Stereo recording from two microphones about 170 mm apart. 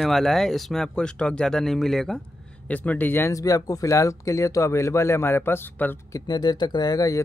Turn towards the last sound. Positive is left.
turn(degrees=20)  # may be behind; listen again after turning